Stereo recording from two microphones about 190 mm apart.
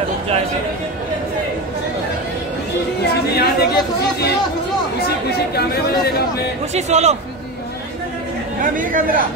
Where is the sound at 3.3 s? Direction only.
55° left (ahead or behind).